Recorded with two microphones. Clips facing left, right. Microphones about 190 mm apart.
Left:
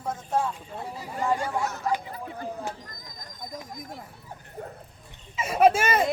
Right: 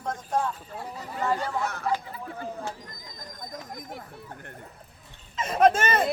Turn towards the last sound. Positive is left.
turn(degrees=10)  # may be behind; listen again after turning